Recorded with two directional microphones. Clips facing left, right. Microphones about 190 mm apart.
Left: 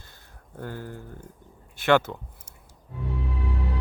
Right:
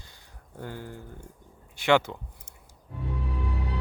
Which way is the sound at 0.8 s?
15° right (ahead or behind).